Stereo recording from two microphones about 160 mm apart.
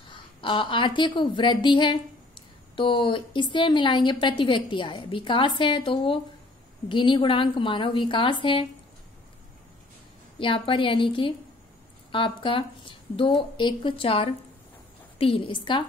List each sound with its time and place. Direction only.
0.1 s a woman's voice: 30° left (ahead or behind)
10.4 s a woman's voice: 35° left (ahead or behind)